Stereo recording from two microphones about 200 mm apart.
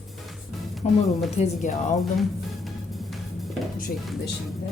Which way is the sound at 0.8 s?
35° left (ahead or behind).